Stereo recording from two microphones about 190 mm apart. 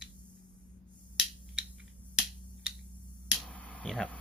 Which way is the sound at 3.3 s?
Centre (ahead or behind).